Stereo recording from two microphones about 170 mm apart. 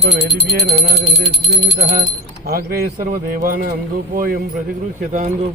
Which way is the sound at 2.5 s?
65° right (ahead or behind).